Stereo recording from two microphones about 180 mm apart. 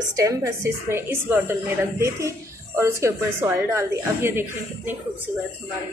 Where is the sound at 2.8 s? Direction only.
15° right (ahead or behind).